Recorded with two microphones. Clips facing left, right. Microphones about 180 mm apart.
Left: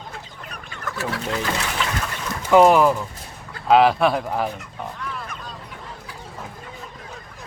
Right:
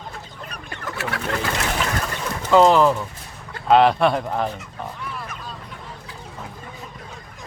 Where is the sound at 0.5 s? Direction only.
65° right (ahead or behind).